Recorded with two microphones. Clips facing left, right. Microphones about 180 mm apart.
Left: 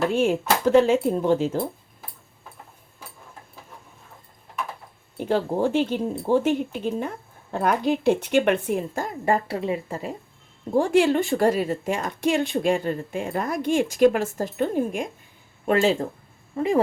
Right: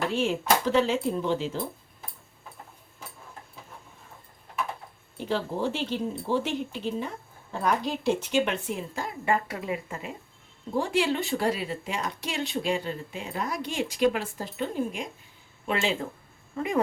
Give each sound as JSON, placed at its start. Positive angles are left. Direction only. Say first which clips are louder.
{"t": 0.1, "sound": "speech", "louder": "left 4 dB", "side_deg": 50}
{"t": 5.1, "sound": "speech", "louder": "left 6 dB", "side_deg": 50}
{"t": 10.8, "sound": "speech", "louder": "left 7 dB", "side_deg": 50}